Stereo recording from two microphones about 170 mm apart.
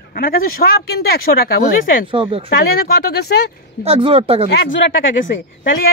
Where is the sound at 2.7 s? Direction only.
65° left (ahead or behind).